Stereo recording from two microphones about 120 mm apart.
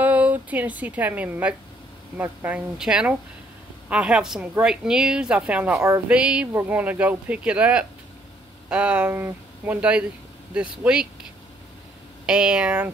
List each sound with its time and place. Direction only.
0.0 s a woman's voice: 15° right (ahead or behind)
12.3 s speech: 5° right (ahead or behind)